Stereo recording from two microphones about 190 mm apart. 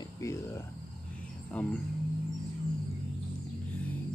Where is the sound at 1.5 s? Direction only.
5° left (ahead or behind).